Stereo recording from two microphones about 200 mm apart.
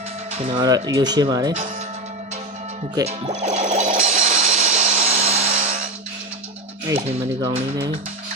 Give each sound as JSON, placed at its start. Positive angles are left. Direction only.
{"t": 0.3, "sound": "speech", "side_deg": -25}
{"t": 3.1, "sound": "music", "side_deg": -35}
{"t": 6.9, "sound": "speech", "side_deg": -15}